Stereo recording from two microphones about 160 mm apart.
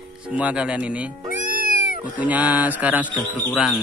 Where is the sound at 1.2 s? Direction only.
60° right (ahead or behind).